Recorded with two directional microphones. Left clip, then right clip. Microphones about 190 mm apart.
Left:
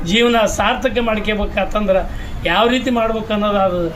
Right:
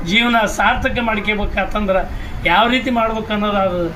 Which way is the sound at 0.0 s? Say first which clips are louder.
Left 1 dB; 15° left (ahead or behind).